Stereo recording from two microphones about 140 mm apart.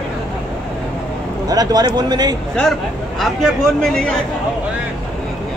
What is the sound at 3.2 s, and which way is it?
Speech, centre (ahead or behind).